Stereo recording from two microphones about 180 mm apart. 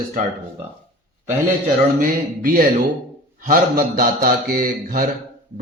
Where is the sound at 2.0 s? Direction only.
50° right (ahead or behind).